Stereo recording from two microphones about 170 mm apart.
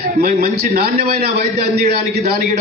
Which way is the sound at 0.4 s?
65° right (ahead or behind).